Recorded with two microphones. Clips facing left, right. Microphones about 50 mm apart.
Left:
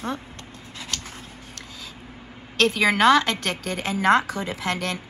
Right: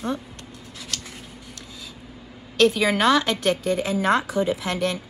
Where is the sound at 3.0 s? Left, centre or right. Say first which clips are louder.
Left 3 dB; left.